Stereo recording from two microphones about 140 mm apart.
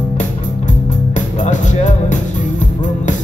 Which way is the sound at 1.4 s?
60° left (ahead or behind).